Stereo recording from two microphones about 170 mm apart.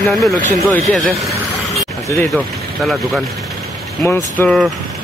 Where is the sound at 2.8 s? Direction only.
5° left (ahead or behind).